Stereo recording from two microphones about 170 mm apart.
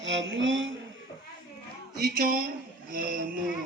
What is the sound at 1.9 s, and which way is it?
Speech, 60° right (ahead or behind).